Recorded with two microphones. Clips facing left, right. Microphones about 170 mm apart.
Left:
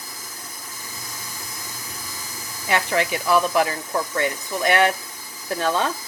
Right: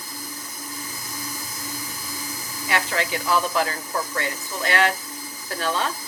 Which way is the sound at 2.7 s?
20° left (ahead or behind).